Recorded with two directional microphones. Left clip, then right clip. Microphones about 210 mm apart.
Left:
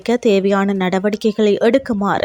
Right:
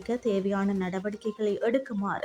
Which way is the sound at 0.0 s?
40° left (ahead or behind).